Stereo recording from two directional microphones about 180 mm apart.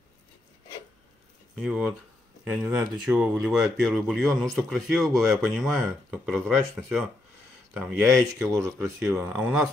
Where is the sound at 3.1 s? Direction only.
5° right (ahead or behind).